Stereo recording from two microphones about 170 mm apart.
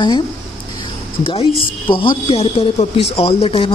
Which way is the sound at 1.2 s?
35° left (ahead or behind).